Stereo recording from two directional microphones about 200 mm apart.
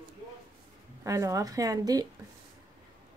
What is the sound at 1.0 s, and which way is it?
Speech, 15° right (ahead or behind).